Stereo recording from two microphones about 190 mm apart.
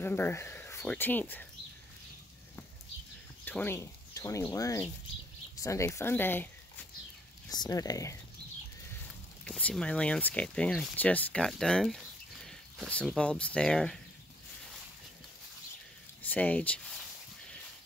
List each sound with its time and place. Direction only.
0.0 s speech: 10° left (ahead or behind)
3.4 s speech: 10° left (ahead or behind)
7.4 s speech: 20° left (ahead or behind)
9.4 s speech: 5° left (ahead or behind)
16.2 s speech: 10° left (ahead or behind)